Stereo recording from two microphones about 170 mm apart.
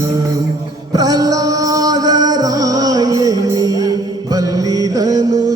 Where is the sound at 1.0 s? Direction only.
20° right (ahead or behind).